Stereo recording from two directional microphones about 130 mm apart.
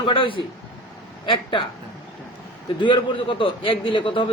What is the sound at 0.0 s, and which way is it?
A man's voice, 40° left (ahead or behind).